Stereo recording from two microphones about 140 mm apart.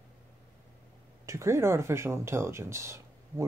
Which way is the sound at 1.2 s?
20° right (ahead or behind).